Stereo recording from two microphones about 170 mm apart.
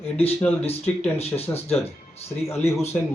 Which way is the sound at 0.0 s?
35° left (ahead or behind).